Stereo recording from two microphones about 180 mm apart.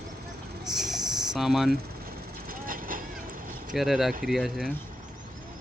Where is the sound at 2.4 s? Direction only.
50° right (ahead or behind).